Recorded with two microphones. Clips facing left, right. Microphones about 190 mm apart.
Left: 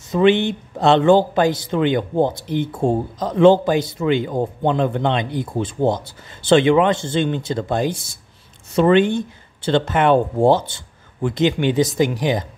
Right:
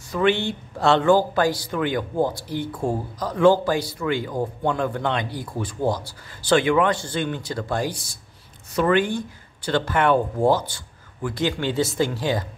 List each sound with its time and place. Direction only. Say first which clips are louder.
0.1 s speech: left 6 dB; 20° left (ahead or behind)